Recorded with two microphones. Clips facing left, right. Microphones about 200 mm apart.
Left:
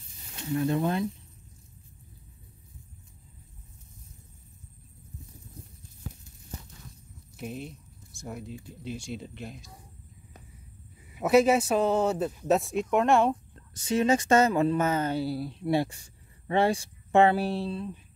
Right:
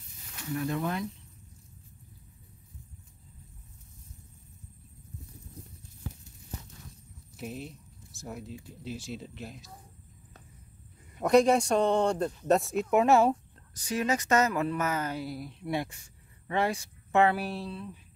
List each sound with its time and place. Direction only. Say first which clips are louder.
0.3 s speech: left 5 dB; 25° left (ahead or behind)
7.3 s speech: left 2 dB; centre (ahead or behind)
11.1 s speech: left 1 dB; 5° left (ahead or behind)
13.7 s speech: left 5 dB; 25° left (ahead or behind)